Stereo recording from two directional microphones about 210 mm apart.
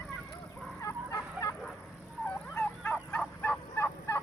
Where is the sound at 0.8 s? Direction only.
15° left (ahead or behind).